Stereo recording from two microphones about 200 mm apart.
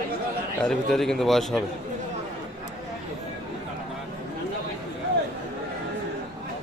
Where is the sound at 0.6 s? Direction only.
Centre (ahead or behind).